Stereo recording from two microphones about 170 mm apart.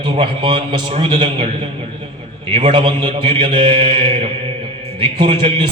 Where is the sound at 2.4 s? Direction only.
35° right (ahead or behind).